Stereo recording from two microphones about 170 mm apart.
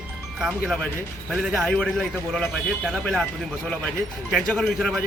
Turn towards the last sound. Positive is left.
turn(degrees=0)  # may be behind; listen again after turning